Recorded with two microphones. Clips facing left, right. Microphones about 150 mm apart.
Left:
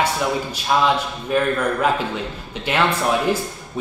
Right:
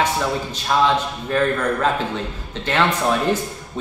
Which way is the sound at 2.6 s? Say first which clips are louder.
Even; 15° left (ahead or behind).